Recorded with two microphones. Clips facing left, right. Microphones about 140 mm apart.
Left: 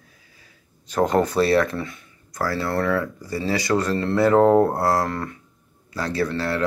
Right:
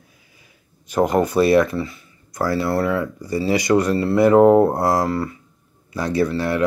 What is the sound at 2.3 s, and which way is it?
Speech, 15° right (ahead or behind).